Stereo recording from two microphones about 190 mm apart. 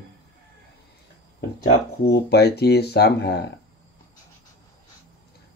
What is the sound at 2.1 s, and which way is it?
Speech, 60° left (ahead or behind).